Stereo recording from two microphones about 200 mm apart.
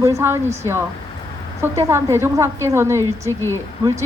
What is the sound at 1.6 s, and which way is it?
A woman's voice, 15° right (ahead or behind).